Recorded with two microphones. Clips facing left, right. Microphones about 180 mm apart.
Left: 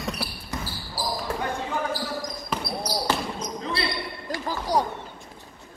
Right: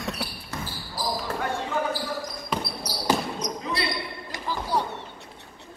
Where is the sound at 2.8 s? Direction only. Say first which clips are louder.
Right 2 dB; 15° right (ahead or behind).